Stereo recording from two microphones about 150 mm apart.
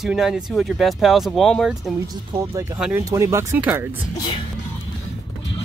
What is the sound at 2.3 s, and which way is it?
Speech, 20° right (ahead or behind).